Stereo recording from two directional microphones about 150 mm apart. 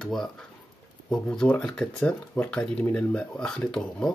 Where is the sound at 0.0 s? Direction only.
Centre (ahead or behind).